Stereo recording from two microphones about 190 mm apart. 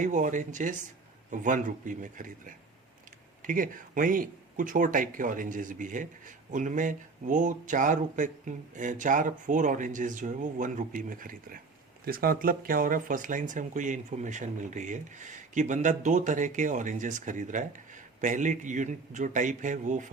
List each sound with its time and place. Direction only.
0.0 s speech: 40° right (ahead or behind)